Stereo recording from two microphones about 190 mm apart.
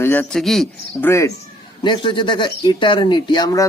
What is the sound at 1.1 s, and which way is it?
Speech, 15° left (ahead or behind).